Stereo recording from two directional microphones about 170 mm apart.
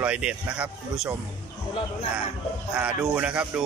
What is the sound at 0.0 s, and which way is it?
Speech, 5° right (ahead or behind).